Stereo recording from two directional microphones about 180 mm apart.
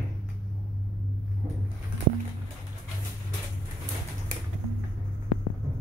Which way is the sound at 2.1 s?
70° right (ahead or behind).